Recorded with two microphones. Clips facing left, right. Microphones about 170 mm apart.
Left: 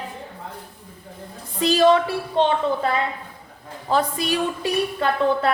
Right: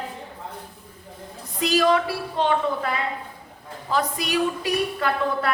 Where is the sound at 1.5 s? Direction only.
30° left (ahead or behind).